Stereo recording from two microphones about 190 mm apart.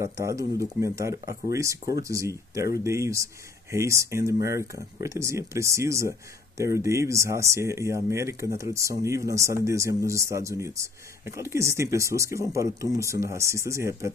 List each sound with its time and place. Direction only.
0.0 s speech: 15° right (ahead or behind)